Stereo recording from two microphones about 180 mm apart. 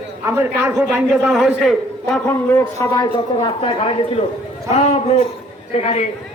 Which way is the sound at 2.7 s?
20° left (ahead or behind).